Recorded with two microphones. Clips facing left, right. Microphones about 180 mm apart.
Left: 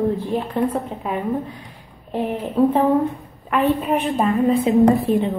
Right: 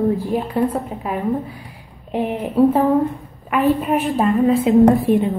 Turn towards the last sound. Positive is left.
turn(degrees=0)  # may be behind; listen again after turning